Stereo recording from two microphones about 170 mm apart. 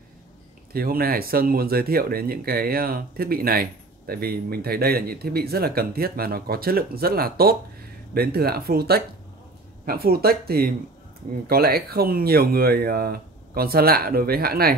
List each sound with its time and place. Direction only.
0.7 s speech: 60° right (ahead or behind)